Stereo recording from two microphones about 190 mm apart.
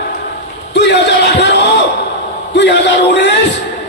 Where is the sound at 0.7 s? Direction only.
65° left (ahead or behind).